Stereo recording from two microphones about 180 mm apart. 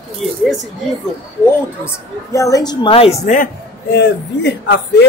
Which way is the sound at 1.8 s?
15° left (ahead or behind).